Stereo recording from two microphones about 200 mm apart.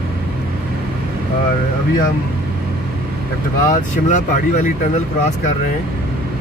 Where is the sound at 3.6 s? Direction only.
40° left (ahead or behind).